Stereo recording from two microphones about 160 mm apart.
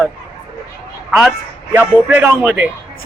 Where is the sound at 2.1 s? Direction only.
10° right (ahead or behind).